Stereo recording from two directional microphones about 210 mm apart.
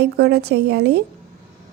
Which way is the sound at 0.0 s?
50° right (ahead or behind).